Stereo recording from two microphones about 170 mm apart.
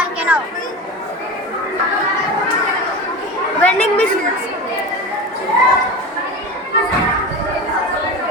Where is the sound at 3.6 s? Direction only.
5° left (ahead or behind).